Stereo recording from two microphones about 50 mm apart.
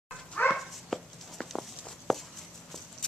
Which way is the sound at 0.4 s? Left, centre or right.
Left.